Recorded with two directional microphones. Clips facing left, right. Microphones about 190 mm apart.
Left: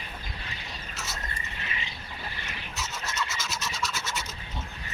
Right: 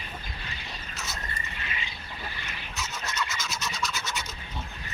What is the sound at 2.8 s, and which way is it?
Scratch, 5° left (ahead or behind).